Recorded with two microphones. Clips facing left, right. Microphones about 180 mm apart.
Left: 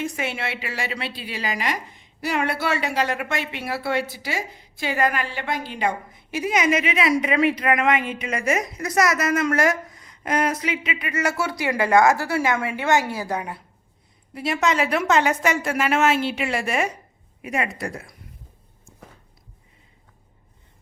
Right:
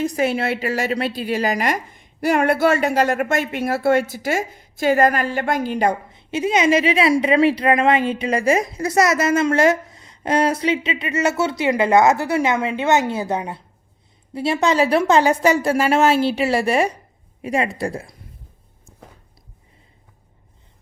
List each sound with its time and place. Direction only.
0.0 s a woman's voice: 40° right (ahead or behind)
6.1 s a woman's voice: 25° right (ahead or behind)